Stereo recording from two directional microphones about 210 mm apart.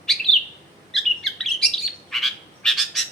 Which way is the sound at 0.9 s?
Centre (ahead or behind).